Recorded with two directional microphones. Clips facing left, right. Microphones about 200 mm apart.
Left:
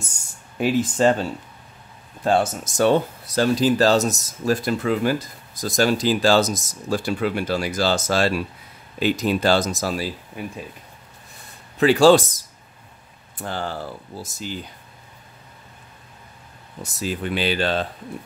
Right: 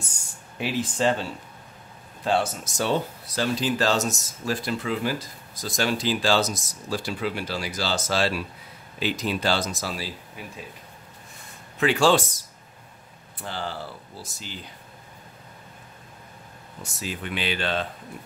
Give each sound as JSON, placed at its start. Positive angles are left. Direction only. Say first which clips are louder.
{"t": 0.6, "sound": "speech", "louder": "left 7 dB", "side_deg": 45}
{"t": 2.2, "sound": "speech", "louder": "left 4 dB", "side_deg": 45}
{"t": 11.8, "sound": "speech", "louder": "left 7 dB", "side_deg": 35}
{"t": 13.4, "sound": "speech", "louder": "left 4 dB", "side_deg": 50}
{"t": 16.8, "sound": "speech", "louder": "left 7 dB", "side_deg": 40}